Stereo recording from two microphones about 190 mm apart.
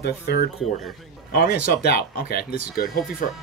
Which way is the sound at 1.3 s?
50° left (ahead or behind).